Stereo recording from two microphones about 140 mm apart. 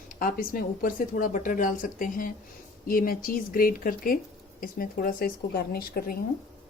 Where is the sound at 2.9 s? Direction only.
90° left.